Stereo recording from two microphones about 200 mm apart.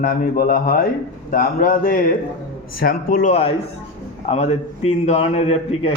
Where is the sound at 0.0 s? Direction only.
45° left (ahead or behind).